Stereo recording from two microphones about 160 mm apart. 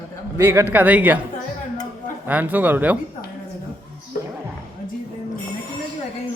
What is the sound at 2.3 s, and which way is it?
Speech, 10° right (ahead or behind).